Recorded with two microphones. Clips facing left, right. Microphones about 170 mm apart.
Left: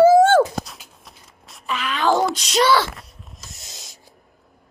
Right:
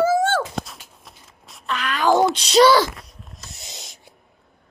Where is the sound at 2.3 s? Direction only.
30° right (ahead or behind).